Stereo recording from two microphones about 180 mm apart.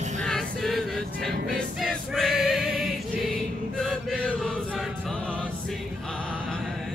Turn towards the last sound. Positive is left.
turn(degrees=5)  # may be behind; listen again after turning